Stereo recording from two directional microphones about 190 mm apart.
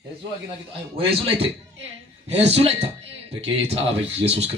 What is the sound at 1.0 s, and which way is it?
A man's voice, 30° right (ahead or behind).